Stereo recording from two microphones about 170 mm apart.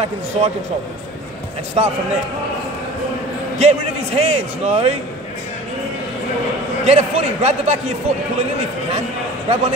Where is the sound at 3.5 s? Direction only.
40° right (ahead or behind).